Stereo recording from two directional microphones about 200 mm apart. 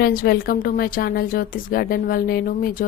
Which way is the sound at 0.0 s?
45° left (ahead or behind).